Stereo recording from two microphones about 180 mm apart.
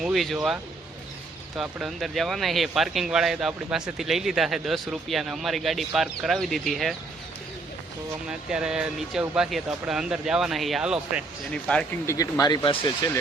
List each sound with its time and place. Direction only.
0.0 s speech: centre (ahead or behind)
8.3 s speech: 5° right (ahead or behind)
12.0 s speech: 20° left (ahead or behind)